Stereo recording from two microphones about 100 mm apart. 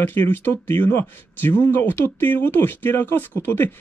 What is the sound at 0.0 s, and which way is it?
Speech, 20° left (ahead or behind).